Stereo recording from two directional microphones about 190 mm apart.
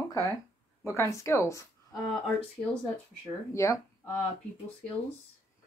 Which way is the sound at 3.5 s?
15° left (ahead or behind).